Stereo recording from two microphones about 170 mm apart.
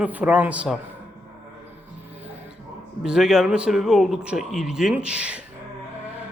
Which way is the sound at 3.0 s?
5° right (ahead or behind).